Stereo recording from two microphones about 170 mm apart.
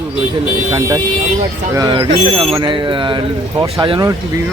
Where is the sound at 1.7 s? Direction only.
20° right (ahead or behind).